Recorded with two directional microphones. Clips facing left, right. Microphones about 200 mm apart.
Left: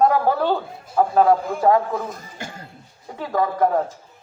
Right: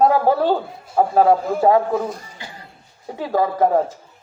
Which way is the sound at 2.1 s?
45° left (ahead or behind).